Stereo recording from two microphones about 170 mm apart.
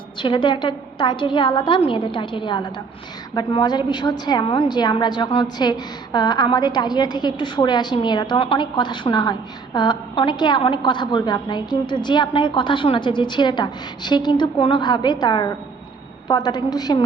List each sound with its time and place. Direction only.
0.2 s a woman's voice: 30° left (ahead or behind)